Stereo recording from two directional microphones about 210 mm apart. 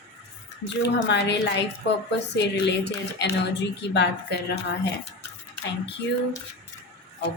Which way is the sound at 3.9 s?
55° left (ahead or behind).